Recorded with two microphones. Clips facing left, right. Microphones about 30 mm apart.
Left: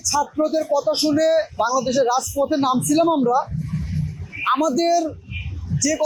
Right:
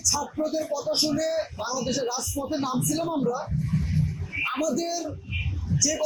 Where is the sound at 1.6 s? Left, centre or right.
Left.